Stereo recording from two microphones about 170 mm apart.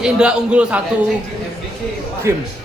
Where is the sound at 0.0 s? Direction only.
5° right (ahead or behind).